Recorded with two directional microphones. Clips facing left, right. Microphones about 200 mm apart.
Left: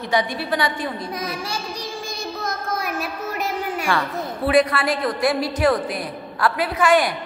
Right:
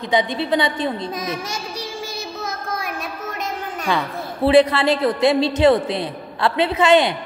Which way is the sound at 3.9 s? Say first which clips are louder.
Right 3 dB; 20° right (ahead or behind).